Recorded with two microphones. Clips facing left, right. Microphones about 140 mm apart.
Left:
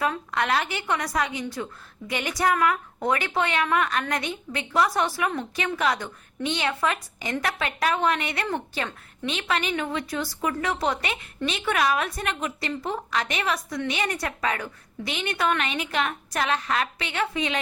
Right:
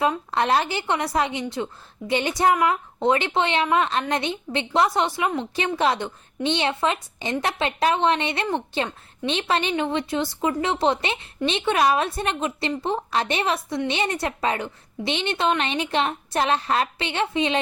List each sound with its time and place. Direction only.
0.3 s a woman's voice: 30° right (ahead or behind)